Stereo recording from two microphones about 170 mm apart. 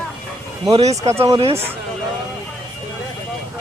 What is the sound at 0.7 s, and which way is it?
Speech, 40° right (ahead or behind).